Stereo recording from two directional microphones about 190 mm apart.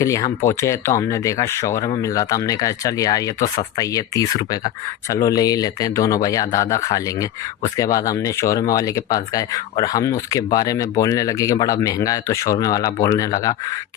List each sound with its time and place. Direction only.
0.0 s speech: 15° left (ahead or behind)